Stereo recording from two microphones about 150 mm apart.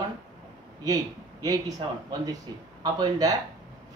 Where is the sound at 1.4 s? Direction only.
25° right (ahead or behind).